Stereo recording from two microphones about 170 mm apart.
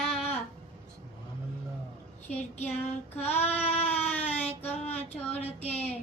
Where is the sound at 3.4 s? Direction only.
35° left (ahead or behind).